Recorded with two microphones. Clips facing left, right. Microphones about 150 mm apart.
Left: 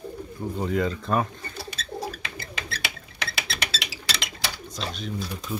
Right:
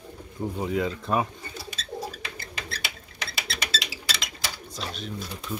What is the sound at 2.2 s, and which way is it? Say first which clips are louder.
Rodents: left 2 dB; 75° left (ahead or behind).